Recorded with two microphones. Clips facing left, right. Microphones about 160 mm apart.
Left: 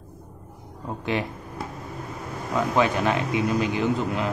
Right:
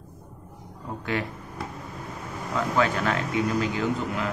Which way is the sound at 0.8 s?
20° left (ahead or behind).